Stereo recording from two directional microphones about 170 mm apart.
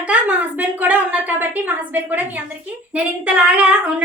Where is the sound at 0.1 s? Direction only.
10° right (ahead or behind).